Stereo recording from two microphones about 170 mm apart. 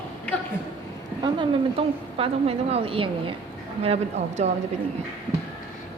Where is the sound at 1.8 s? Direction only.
35° right (ahead or behind).